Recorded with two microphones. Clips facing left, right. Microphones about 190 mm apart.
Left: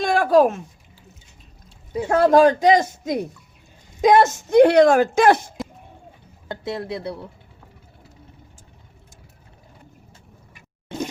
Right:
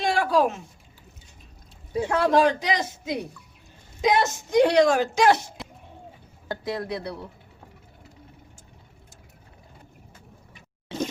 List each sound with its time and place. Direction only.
0.0 s a sound: 50° left (ahead or behind)
2.0 s speech: 50° left (ahead or behind)
6.5 s speech: 25° left (ahead or behind)